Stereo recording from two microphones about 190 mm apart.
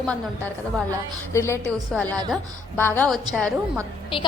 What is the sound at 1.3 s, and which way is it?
A woman's voice, 15° left (ahead or behind).